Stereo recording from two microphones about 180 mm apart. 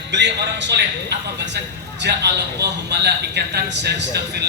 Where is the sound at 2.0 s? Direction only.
70° right (ahead or behind).